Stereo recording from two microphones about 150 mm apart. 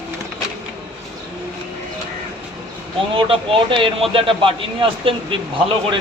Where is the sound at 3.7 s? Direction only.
35° right (ahead or behind).